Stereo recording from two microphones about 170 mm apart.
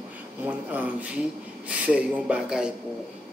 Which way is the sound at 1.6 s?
10° right (ahead or behind).